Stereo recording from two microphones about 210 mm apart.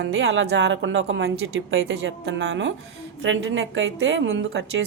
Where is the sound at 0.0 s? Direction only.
70° right (ahead or behind).